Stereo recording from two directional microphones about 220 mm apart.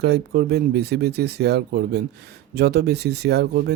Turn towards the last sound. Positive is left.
turn(degrees=-50)  # may be behind; listen again after turning